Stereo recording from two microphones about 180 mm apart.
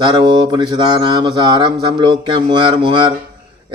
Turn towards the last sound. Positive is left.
turn(degrees=-25)  # may be behind; listen again after turning